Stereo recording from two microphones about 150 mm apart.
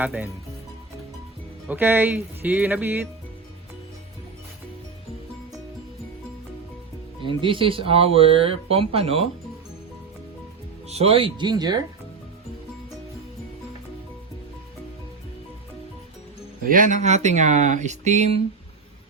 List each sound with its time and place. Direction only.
0.0 s speech: 10° right (ahead or behind)
1.6 s speech: 10° right (ahead or behind)
7.2 s speech: 35° right (ahead or behind)
10.8 s speech: 45° right (ahead or behind); by 11.8 s 30° right (ahead or behind)
16.6 s speech: 60° right (ahead or behind); by 18.4 s 45° right (ahead or behind)